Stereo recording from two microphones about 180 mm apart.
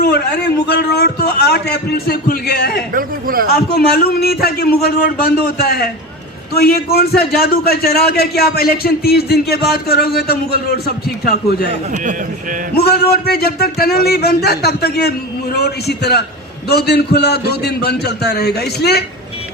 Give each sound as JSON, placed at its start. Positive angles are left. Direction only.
{"t": 0.0, "sound": "a man's voice", "side_deg": 65}
{"t": 2.9, "sound": "speech", "side_deg": -50}
{"t": 3.5, "sound": "a man's voice", "side_deg": 60}
{"t": 12.7, "sound": "a man's voice", "side_deg": 60}